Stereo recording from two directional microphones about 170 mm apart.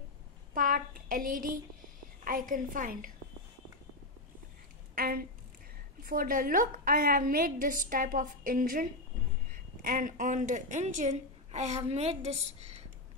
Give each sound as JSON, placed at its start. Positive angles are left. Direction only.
{"t": 0.6, "sound": "a sound", "side_deg": -55}
{"t": 2.2, "sound": "a woman's voice", "side_deg": -55}
{"t": 4.9, "sound": "a woman's voice", "side_deg": -65}